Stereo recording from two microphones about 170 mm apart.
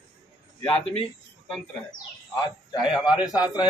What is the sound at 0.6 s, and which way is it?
Speech, 35° left (ahead or behind).